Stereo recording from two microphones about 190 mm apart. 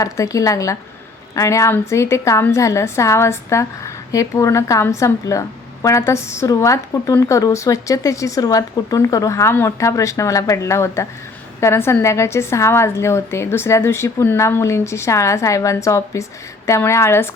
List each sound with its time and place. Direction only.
0.0 s a woman's voice: 15° left (ahead or behind)